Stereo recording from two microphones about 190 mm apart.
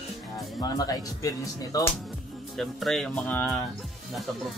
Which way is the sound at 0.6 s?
20° left (ahead or behind).